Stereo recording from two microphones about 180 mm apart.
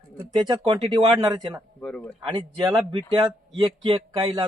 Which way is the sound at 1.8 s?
5° left (ahead or behind).